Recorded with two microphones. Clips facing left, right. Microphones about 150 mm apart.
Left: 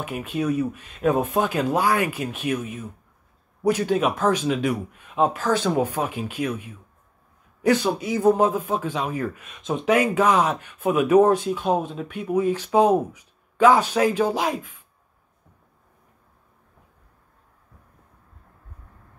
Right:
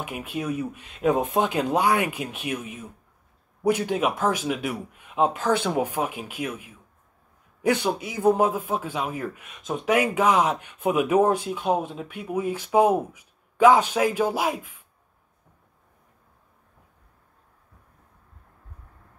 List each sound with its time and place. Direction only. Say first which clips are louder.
0.0 s speech: left 4 dB; 15° right (ahead or behind)